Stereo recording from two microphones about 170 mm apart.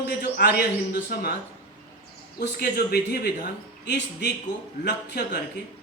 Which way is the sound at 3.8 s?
90° left.